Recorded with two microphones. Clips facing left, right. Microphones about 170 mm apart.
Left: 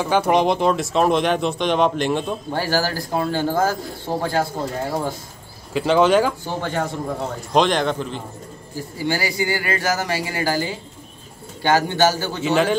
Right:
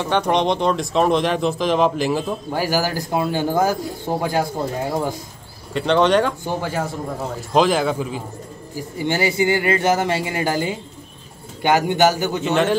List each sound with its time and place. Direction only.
0.0 s speech: 5° left (ahead or behind); by 4.5 s 15° right (ahead or behind)
5.7 s speech: 5° left (ahead or behind)
8.7 s speech: 20° right (ahead or behind)
12.4 s speech: centre (ahead or behind)